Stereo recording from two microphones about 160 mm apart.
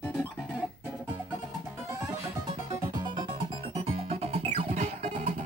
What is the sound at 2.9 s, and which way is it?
Music, 30° right (ahead or behind).